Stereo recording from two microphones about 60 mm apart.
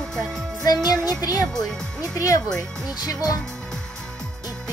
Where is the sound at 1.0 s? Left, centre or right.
Left.